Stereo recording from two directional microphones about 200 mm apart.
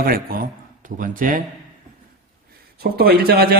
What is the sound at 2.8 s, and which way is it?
Speech, 50° right (ahead or behind).